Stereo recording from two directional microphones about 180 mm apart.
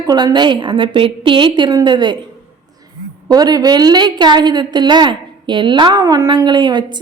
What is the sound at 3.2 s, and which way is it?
A woman's voice, 20° right (ahead or behind).